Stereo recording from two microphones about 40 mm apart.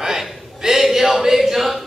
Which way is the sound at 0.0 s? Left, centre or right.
Centre.